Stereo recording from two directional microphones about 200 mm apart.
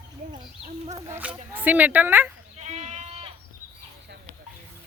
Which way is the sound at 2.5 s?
35° right (ahead or behind).